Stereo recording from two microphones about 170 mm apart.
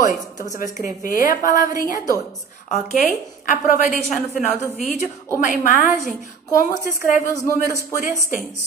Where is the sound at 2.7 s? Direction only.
45° left (ahead or behind).